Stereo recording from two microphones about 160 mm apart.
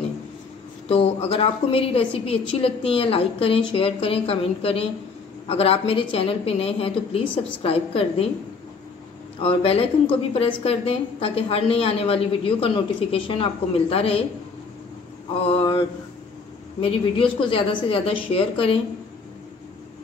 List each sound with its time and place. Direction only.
0.8 s a woman's voice: 40° left (ahead or behind)
9.4 s a woman's voice: 35° left (ahead or behind)
15.4 s a woman's voice: 35° left (ahead or behind)
17.2 s a woman's voice: 35° left (ahead or behind)